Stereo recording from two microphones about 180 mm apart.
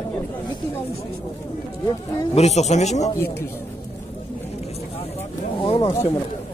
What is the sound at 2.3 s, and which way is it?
Speech, 35° left (ahead or behind).